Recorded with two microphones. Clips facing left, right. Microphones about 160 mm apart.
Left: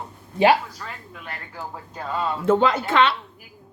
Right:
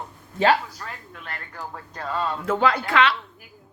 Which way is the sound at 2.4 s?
25° left (ahead or behind).